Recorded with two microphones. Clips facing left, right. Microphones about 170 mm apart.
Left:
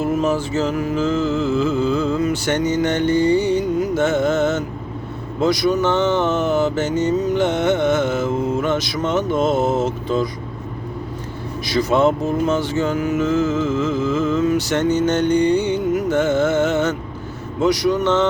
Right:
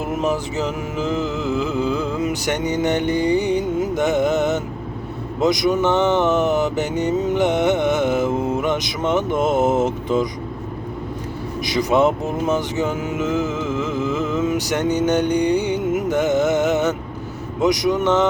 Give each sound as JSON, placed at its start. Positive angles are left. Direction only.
{"t": 0.0, "sound": "speech", "side_deg": -15}
{"t": 11.6, "sound": "speech", "side_deg": -15}